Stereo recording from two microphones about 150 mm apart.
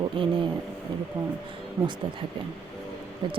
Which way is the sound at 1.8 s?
20° right (ahead or behind).